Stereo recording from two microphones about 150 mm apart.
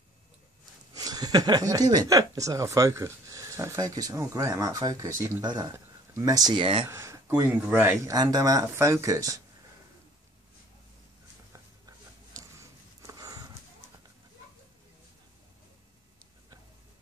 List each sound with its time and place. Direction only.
0.9 s speech: 25° right (ahead or behind)
6.9 s speech: 20° right (ahead or behind)
8.2 s speech: 25° right (ahead or behind)
12.4 s a sound: 25° right (ahead or behind)